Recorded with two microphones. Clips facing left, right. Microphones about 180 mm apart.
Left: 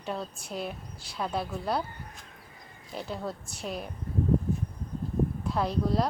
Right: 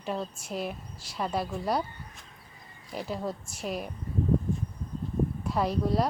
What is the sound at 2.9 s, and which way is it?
Speech, 5° right (ahead or behind).